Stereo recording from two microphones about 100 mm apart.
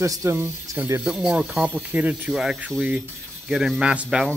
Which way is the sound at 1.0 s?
5° right (ahead or behind).